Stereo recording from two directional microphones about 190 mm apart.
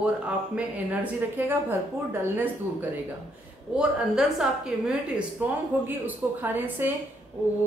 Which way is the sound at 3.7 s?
5° right (ahead or behind).